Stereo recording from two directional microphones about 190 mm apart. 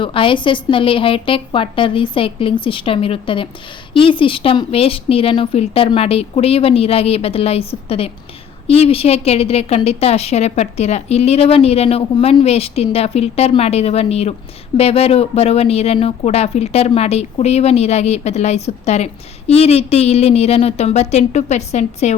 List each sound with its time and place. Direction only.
0.0 s a woman's voice: 25° left (ahead or behind)